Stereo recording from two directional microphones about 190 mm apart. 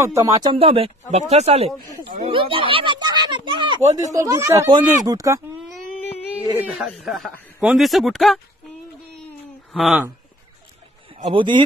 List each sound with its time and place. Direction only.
0.0 s speech: 15° right (ahead or behind)
6.0 s a sound: 35° left (ahead or behind)
6.6 s speech: 5° right (ahead or behind)
9.7 s speech: centre (ahead or behind)
11.1 s speech: 30° right (ahead or behind)